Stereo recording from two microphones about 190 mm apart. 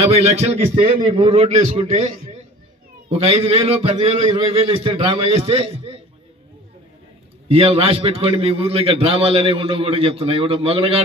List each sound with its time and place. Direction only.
0.0 s a man's voice: 35° right (ahead or behind)
3.1 s a man's voice: 30° right (ahead or behind)
7.4 s a man's voice: 30° right (ahead or behind)